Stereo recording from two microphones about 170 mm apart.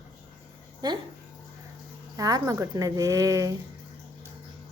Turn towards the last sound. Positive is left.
turn(degrees=-20)  # may be behind; listen again after turning